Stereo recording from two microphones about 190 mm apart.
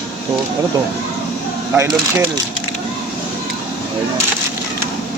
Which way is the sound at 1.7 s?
15° right (ahead or behind).